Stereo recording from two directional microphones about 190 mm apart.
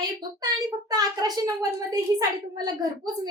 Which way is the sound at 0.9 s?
20° right (ahead or behind).